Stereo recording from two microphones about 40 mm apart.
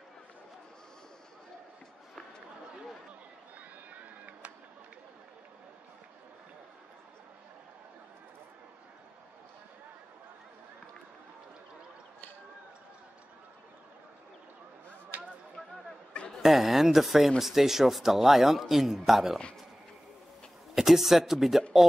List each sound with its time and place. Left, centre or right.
3.9 s a sound: right
16.4 s a man's voice: centre
20.7 s speech: centre